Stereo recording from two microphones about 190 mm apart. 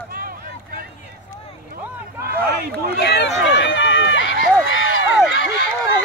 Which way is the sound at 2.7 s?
50° right (ahead or behind).